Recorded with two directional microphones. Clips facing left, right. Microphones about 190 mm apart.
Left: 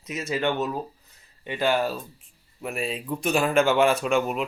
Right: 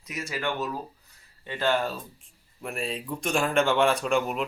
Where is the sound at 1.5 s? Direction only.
10° left (ahead or behind).